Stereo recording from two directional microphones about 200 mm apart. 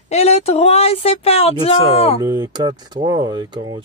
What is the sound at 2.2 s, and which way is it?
Speech, 20° right (ahead or behind).